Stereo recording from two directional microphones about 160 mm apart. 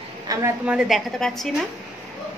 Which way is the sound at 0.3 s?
25° right (ahead or behind).